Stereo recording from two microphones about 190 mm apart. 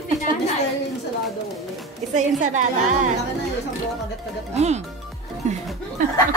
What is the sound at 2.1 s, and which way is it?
Speech, 40° right (ahead or behind).